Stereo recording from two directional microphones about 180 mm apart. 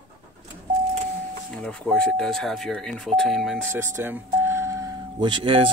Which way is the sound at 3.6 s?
15° right (ahead or behind).